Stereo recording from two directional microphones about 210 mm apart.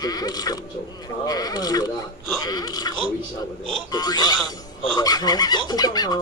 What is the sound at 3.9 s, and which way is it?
Speech, 20° left (ahead or behind).